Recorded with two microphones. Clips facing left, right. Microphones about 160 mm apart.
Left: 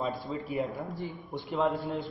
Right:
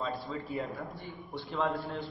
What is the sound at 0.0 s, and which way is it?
A man's voice, 20° left (ahead or behind).